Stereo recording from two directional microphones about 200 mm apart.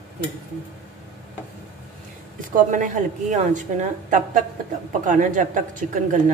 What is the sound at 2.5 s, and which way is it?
A woman's voice, 40° right (ahead or behind).